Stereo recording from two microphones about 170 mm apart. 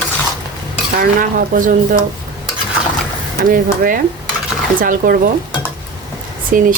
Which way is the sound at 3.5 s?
55° right (ahead or behind).